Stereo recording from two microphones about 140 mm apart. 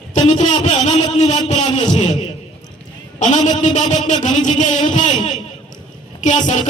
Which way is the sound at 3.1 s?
60° left (ahead or behind).